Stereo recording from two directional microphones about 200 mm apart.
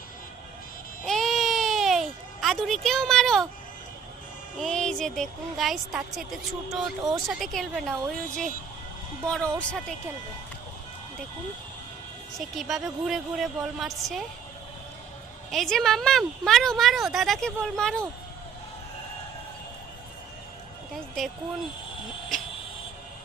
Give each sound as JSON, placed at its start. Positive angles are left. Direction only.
{"t": 1.0, "sound": "baby cry", "side_deg": 0}
{"t": 4.6, "sound": "speech", "side_deg": 5}
{"t": 8.1, "sound": "speech", "side_deg": -40}
{"t": 9.2, "sound": "speech", "side_deg": 5}
{"t": 12.5, "sound": "speech", "side_deg": 0}
{"t": 15.4, "sound": "speech", "side_deg": 0}